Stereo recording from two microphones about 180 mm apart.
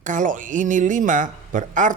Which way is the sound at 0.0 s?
45° right (ahead or behind).